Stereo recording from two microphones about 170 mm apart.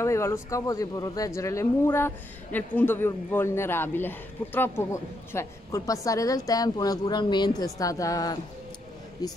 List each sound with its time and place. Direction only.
0.0 s speech: 15° left (ahead or behind)